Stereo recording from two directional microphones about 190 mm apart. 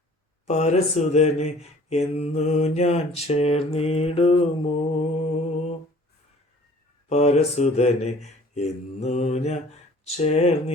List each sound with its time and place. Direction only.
0.4 s mantra: 35° left (ahead or behind)
7.1 s mantra: 35° left (ahead or behind)